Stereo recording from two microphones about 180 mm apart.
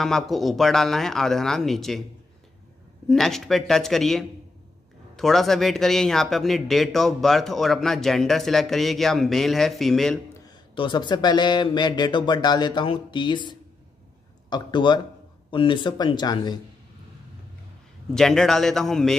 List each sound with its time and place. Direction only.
0.0 s speech: centre (ahead or behind)
3.1 s speech: centre (ahead or behind)
10.4 s speech: 25° left (ahead or behind)
18.1 s speech: 5° left (ahead or behind)